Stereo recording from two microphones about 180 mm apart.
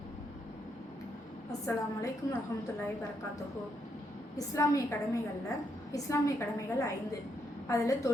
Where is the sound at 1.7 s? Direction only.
15° left (ahead or behind).